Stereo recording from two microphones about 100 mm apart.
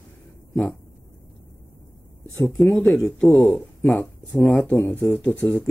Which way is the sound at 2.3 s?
5° left (ahead or behind).